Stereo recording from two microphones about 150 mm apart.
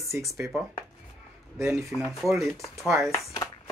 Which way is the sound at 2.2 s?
Centre (ahead or behind).